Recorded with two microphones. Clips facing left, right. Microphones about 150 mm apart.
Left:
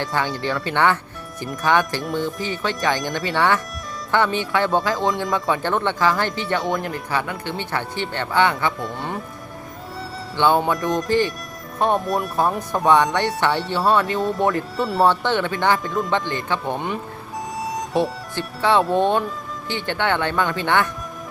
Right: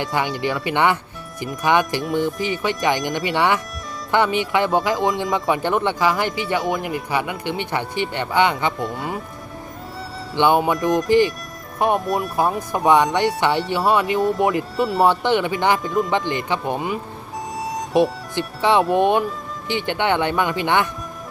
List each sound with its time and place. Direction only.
0.0 s speech: 15° right (ahead or behind)
8.8 s speech: centre (ahead or behind)
10.3 s speech: 15° right (ahead or behind)
10.8 s speech: centre (ahead or behind)
12.0 s speech: centre (ahead or behind)
14.2 s speech: centre (ahead or behind)
15.0 s speech: 10° right (ahead or behind)
15.8 s speech: 5° right (ahead or behind)
16.1 s speech: 15° right (ahead or behind)
17.6 s music: centre (ahead or behind)
17.9 s speech: 20° right (ahead or behind)